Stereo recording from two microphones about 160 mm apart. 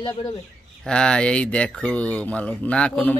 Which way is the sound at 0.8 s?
5° left (ahead or behind).